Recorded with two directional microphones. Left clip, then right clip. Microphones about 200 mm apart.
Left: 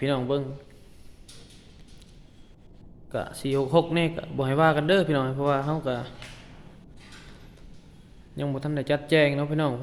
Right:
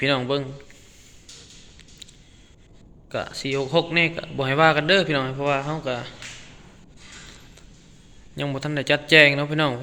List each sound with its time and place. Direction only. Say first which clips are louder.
0.0 s a man's voice: right 4 dB; 10° left (ahead or behind)
3.1 s a man's voice: right 2 dB; 15° left (ahead or behind)
8.4 s a man's voice: right 3 dB; 5° left (ahead or behind)